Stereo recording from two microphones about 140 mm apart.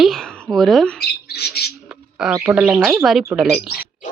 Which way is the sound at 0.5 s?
Centre (ahead or behind).